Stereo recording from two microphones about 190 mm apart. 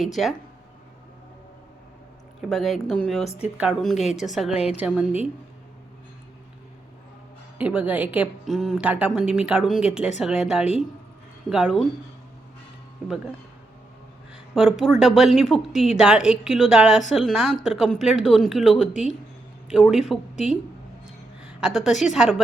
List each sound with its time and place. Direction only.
0.0 s a woman's voice: centre (ahead or behind)
2.5 s a woman's voice: centre (ahead or behind)
3.9 s a woman's voice: 35° left (ahead or behind)
4.3 s a woman's voice: centre (ahead or behind)
7.6 s a woman's voice: 5° right (ahead or behind)
14.5 s a woman's voice: centre (ahead or behind)